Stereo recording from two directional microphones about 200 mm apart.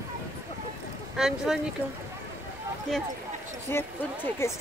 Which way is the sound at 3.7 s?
10° left (ahead or behind).